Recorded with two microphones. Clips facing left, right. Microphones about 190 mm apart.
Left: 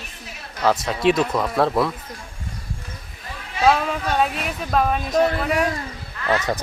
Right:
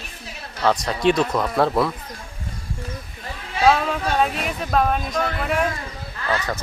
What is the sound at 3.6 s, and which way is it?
Speech, centre (ahead or behind).